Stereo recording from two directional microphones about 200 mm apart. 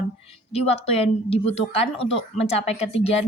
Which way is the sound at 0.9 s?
30° left (ahead or behind).